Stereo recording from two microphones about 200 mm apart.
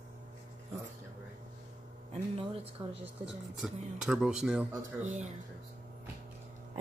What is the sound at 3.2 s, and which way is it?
Speech, 5° right (ahead or behind).